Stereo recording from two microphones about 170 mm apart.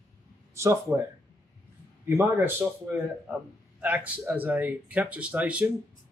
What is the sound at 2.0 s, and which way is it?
Speech, 15° right (ahead or behind).